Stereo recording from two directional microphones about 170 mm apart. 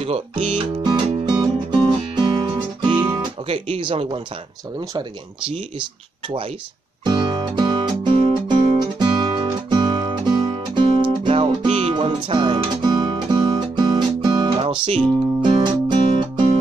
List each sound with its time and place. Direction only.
0.0 s speech: 35° right (ahead or behind)
1.4 s music: 25° right (ahead or behind)
3.4 s speech: 35° right (ahead or behind)
5.5 s speech: 30° right (ahead or behind)
7.1 s music: 25° right (ahead or behind)